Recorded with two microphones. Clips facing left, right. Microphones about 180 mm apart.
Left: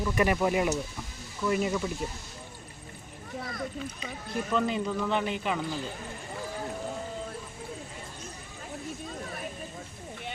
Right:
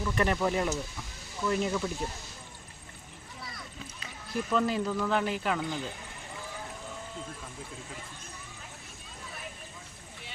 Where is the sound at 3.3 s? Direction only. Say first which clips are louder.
Left 9 dB; 50° left (ahead or behind).